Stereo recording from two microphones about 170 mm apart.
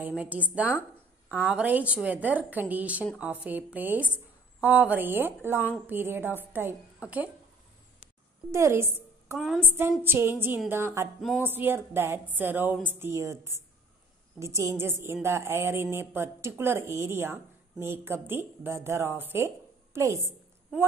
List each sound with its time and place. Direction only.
0.0 s a woman's voice: 10° right (ahead or behind)
8.5 s a woman's voice: 15° right (ahead or behind)
11.1 s music: centre (ahead or behind)
11.4 s a woman's voice: 10° right (ahead or behind)